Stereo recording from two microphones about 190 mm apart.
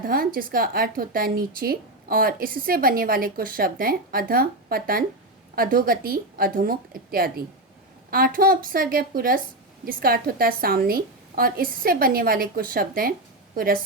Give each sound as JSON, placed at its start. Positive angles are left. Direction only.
{"t": 0.0, "sound": "a woman's voice", "side_deg": -50}